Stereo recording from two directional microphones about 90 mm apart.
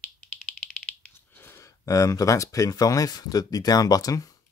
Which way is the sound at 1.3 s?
25° left (ahead or behind).